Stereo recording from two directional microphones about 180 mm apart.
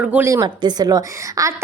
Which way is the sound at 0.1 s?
15° right (ahead or behind).